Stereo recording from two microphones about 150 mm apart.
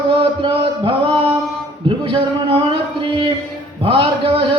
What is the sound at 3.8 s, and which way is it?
Music, 35° right (ahead or behind).